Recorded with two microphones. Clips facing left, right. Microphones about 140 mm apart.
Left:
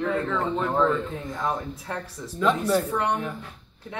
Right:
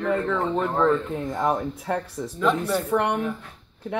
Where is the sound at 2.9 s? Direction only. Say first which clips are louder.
Right 3 dB; 65° right (ahead or behind).